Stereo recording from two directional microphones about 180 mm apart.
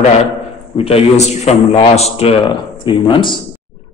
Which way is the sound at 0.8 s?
35° left (ahead or behind).